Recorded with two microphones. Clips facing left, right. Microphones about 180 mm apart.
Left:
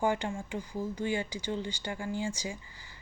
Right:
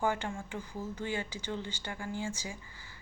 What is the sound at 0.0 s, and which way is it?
Speech, 15° left (ahead or behind).